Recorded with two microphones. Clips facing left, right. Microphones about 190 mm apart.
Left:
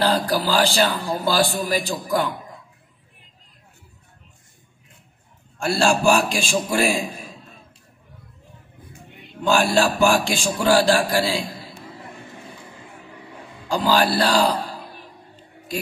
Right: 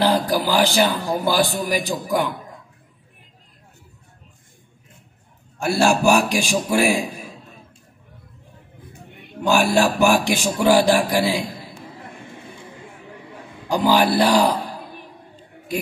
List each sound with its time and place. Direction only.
0.0 s a man's voice: 15° right (ahead or behind)
5.6 s a man's voice: 15° right (ahead or behind)
9.4 s a man's voice: 15° right (ahead or behind)
13.7 s music: 20° right (ahead or behind)